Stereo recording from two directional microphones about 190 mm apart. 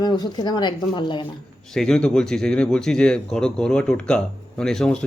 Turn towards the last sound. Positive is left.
turn(degrees=5)  # may be behind; listen again after turning